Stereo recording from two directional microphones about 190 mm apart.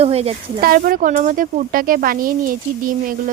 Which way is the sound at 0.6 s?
50° right (ahead or behind).